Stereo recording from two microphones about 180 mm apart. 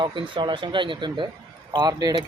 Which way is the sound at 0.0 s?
25° right (ahead or behind).